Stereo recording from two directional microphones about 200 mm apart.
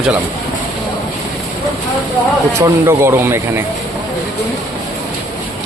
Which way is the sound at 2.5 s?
15° right (ahead or behind).